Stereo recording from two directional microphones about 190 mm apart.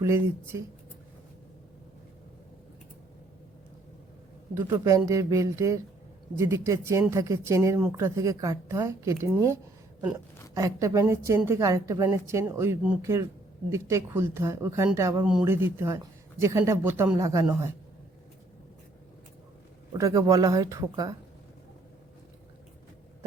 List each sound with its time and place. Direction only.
0.0 s a woman's voice: 15° right (ahead or behind)
4.5 s a woman's voice: 15° right (ahead or behind)
19.9 s speech: 15° right (ahead or behind)